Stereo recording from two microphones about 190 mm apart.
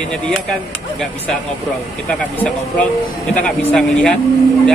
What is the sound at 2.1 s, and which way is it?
Speech, 5° left (ahead or behind).